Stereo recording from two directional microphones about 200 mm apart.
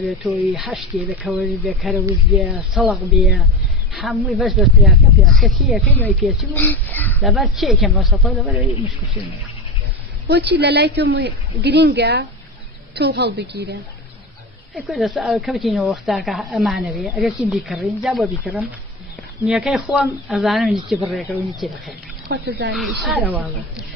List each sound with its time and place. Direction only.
0.0 s speech: centre (ahead or behind)
6.1 s speech: 5° right (ahead or behind)
6.5 s speech: 10° left (ahead or behind)
10.6 s a woman's voice: 50° right (ahead or behind)
14.8 s speech: centre (ahead or behind)
22.3 s speech: 55° right (ahead or behind)
22.8 s speech: centre (ahead or behind)